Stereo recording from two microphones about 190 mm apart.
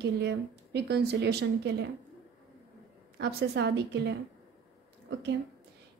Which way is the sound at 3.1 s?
60° right (ahead or behind).